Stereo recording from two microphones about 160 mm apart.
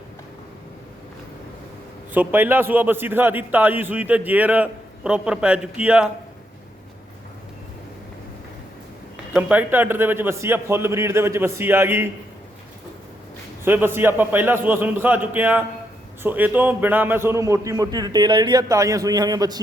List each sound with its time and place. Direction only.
2.1 s a man's voice: 10° right (ahead or behind)
9.3 s a man's voice: 10° right (ahead or behind)
13.7 s a man's voice: 15° right (ahead or behind)